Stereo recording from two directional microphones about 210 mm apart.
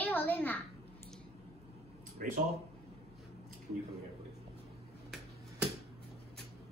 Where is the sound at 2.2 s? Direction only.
40° right (ahead or behind).